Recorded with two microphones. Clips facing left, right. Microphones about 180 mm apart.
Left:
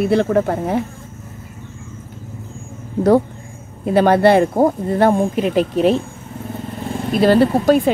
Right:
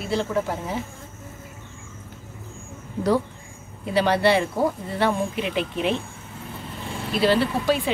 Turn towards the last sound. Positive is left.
turn(degrees=45)  # may be behind; listen again after turning